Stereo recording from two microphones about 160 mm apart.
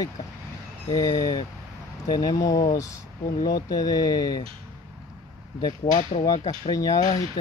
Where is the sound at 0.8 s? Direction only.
25° left (ahead or behind).